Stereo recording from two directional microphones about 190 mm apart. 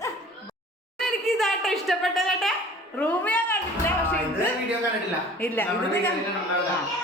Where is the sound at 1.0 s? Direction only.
Centre (ahead or behind).